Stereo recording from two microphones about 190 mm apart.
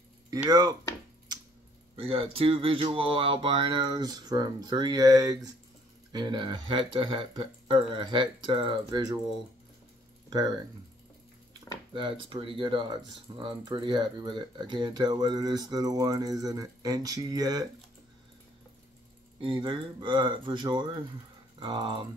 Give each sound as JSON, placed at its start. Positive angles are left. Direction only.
{"t": 0.5, "sound": "speech", "side_deg": -20}
{"t": 2.0, "sound": "speech", "side_deg": -30}
{"t": 11.9, "sound": "speech", "side_deg": -25}
{"t": 19.4, "sound": "speech", "side_deg": -25}